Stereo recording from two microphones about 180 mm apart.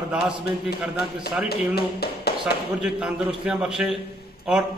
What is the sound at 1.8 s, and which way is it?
Speech, 60° left (ahead or behind).